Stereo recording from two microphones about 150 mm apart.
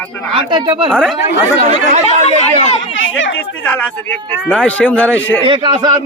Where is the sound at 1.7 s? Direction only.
50° right (ahead or behind).